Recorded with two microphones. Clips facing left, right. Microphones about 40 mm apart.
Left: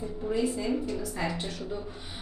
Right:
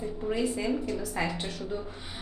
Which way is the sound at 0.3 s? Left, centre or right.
Centre.